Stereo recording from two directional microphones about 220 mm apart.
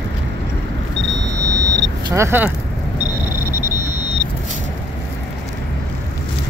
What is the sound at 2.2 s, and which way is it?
Speech, 10° right (ahead or behind).